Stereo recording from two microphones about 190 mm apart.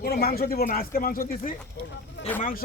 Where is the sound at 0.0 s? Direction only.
55° left (ahead or behind).